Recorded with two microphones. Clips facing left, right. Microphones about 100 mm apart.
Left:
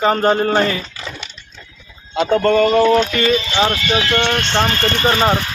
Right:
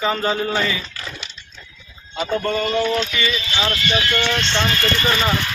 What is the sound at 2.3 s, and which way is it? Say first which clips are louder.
Speech: left 8 dB; 60° left (ahead or behind).